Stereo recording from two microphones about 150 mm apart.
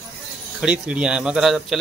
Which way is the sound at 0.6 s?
5° right (ahead or behind).